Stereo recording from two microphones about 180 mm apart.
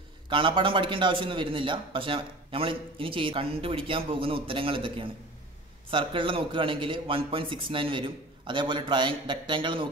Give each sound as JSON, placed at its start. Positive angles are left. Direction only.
{"t": 0.3, "sound": "a man's voice", "side_deg": -30}